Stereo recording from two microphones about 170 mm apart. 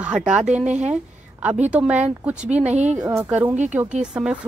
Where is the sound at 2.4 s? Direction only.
40° right (ahead or behind).